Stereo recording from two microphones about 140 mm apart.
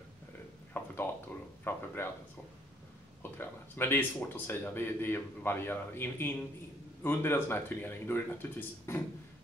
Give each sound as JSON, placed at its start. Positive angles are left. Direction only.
{"t": 0.8, "sound": "a sound", "side_deg": 15}
{"t": 1.6, "sound": "speech", "side_deg": 15}
{"t": 3.2, "sound": "speech", "side_deg": 15}